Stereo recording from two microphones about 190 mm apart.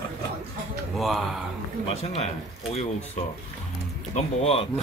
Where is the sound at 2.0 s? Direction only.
35° left (ahead or behind).